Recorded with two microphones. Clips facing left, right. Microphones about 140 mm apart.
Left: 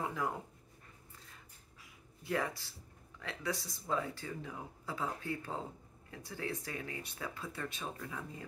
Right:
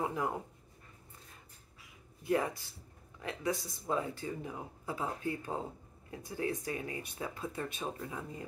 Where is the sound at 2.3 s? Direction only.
20° right (ahead or behind).